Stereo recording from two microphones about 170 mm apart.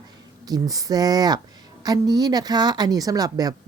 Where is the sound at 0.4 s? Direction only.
20° right (ahead or behind).